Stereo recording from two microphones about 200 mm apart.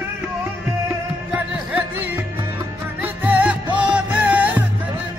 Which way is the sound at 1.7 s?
10° right (ahead or behind).